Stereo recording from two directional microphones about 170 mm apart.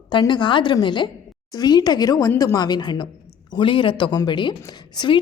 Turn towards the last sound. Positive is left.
turn(degrees=25)  # may be behind; listen again after turning